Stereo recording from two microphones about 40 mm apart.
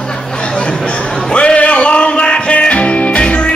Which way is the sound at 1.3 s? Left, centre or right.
Left.